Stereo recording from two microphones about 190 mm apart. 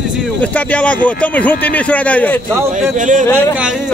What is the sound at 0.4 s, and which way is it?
Speech, 5° left (ahead or behind).